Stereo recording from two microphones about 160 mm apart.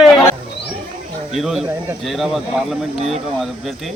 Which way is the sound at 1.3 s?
Centre (ahead or behind).